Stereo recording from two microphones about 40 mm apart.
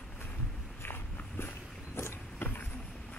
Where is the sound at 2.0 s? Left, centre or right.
Left.